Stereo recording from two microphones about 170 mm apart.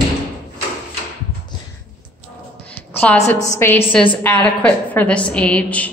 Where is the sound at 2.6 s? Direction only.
10° left (ahead or behind).